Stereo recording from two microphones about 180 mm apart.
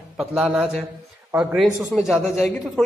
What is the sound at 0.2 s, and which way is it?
A man's voice, 5° right (ahead or behind).